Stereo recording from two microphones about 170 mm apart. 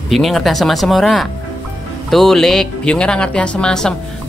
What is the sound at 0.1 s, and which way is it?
A woman's voice, centre (ahead or behind).